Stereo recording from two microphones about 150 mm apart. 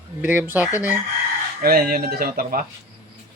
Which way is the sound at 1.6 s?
90° right.